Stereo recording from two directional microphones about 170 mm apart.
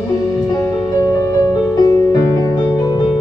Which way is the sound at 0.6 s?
20° left (ahead or behind).